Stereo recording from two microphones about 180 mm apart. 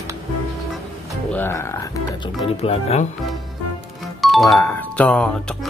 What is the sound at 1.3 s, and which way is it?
Music, 15° left (ahead or behind).